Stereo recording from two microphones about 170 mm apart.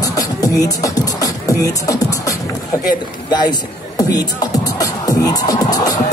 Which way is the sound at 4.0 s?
20° left (ahead or behind).